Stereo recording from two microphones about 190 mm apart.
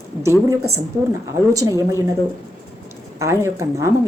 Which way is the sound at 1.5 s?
15° right (ahead or behind).